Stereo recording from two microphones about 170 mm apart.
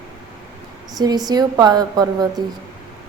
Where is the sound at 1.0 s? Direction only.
20° right (ahead or behind).